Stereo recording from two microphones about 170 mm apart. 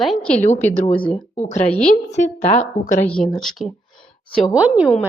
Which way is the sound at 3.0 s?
5° left (ahead or behind).